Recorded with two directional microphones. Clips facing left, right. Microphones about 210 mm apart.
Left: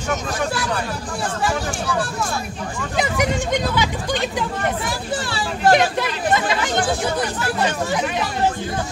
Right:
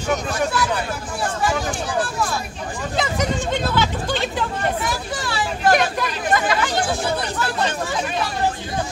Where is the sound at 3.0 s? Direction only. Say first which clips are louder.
Left 2 dB; 15° left (ahead or behind).